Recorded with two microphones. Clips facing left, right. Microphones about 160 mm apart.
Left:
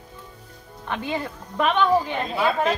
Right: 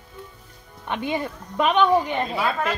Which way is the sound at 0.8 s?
20° right (ahead or behind).